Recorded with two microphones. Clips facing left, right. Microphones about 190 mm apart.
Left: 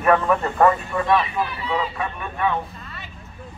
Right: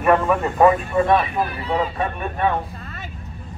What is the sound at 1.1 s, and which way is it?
Speech, 50° right (ahead or behind).